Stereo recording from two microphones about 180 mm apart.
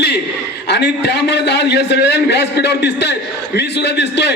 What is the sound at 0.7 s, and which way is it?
A man's voice, 70° left (ahead or behind).